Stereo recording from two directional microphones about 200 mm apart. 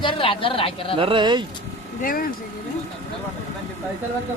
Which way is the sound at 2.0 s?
45° left (ahead or behind).